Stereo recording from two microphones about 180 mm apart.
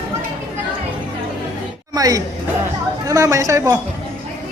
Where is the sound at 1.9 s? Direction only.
20° right (ahead or behind).